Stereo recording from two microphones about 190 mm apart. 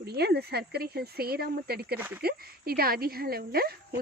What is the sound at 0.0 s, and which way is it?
Speech, 55° right (ahead or behind).